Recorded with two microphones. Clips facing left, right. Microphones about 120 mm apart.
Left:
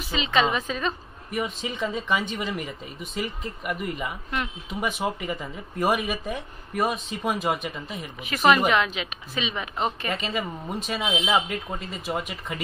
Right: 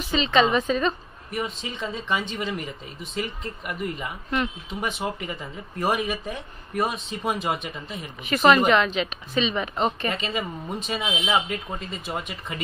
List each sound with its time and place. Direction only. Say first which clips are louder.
0.1 s a woman's voice: right 3 dB; 5° left (ahead or behind)